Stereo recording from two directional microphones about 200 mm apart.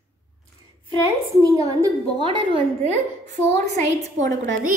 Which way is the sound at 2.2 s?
30° right (ahead or behind).